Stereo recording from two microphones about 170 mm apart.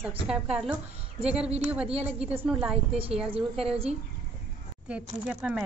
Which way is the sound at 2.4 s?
5° right (ahead or behind).